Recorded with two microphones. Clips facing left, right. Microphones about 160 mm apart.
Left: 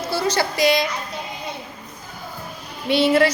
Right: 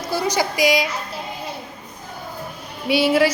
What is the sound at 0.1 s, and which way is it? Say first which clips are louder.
Music: right 1 dB; 15° right (ahead or behind).